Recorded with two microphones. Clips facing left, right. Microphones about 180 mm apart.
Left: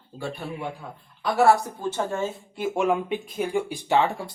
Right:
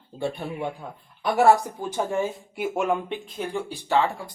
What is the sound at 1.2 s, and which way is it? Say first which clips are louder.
Speech: right 1 dB; 15° right (ahead or behind).